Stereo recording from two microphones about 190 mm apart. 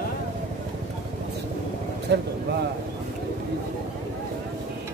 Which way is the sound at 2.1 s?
65° right (ahead or behind).